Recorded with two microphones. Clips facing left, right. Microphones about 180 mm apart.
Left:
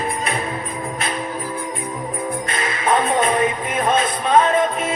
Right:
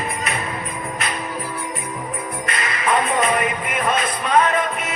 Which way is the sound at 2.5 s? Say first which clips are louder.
Left 1 dB; 25° left (ahead or behind).